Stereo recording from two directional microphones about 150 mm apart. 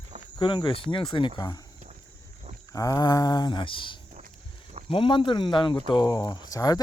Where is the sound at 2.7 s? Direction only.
25° left (ahead or behind).